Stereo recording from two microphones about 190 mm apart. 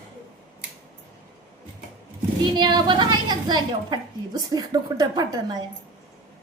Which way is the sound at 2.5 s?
25° right (ahead or behind).